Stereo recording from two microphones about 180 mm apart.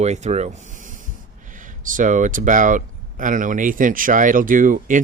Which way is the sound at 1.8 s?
45° right (ahead or behind).